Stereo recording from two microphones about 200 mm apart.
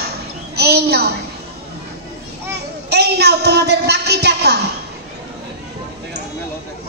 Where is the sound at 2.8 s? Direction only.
55° right (ahead or behind).